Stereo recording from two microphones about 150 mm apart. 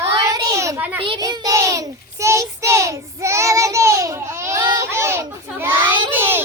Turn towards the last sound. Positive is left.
turn(degrees=-15)  # may be behind; listen again after turning